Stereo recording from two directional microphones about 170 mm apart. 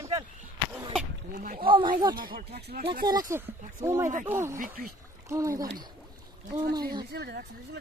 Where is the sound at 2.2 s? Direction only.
60° right (ahead or behind).